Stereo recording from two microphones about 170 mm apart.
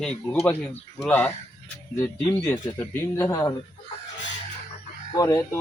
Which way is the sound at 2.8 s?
15° left (ahead or behind).